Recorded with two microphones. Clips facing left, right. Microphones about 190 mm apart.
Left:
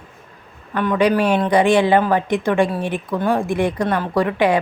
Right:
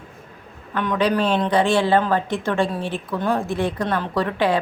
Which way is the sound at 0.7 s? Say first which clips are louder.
Left 4 dB; 5° left (ahead or behind).